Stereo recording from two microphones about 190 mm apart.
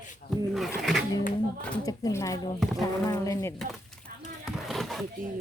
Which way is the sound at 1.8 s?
20° left (ahead or behind).